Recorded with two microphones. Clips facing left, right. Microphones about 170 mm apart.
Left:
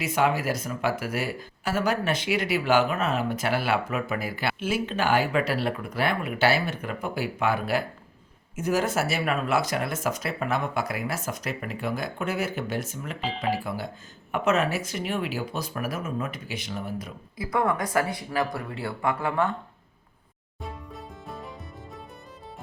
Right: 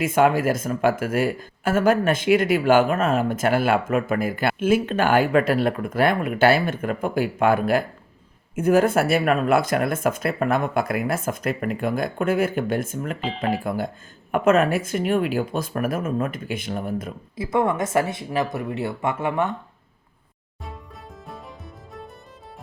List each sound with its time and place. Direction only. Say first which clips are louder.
0.0 s speech: right 6 dB; 50° right (ahead or behind)
13.2 s speech: right 1 dB; centre (ahead or behind)
13.7 s speech: right 6 dB; 50° right (ahead or behind)
17.3 s speech: right 4 dB; 25° right (ahead or behind)
21.2 s music: even; centre (ahead or behind)